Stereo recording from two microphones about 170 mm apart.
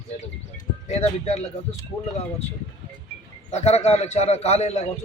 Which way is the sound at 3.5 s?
40° left (ahead or behind).